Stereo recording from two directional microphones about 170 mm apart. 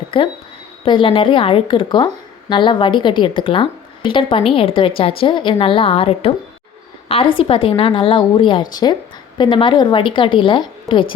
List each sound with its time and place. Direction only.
0.1 s a woman's voice: 30° left (ahead or behind)